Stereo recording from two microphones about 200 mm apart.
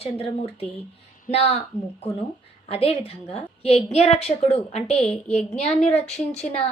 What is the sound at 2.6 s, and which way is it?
A woman's voice, 30° left (ahead or behind).